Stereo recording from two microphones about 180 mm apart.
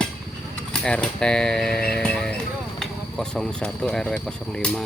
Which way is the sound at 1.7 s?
60° left (ahead or behind).